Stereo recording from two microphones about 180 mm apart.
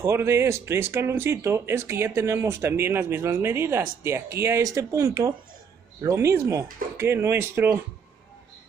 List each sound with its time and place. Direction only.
0.0 s speech: 15° right (ahead or behind)